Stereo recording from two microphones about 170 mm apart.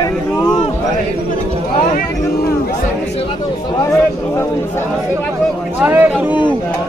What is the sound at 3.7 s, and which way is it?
A man's voice, 15° left (ahead or behind).